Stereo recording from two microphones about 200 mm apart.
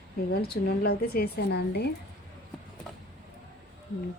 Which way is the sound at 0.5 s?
50° left (ahead or behind).